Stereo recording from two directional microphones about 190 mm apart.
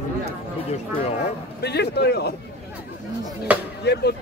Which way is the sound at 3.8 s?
60° left (ahead or behind).